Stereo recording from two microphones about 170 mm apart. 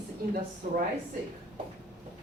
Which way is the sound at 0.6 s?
45° right (ahead or behind).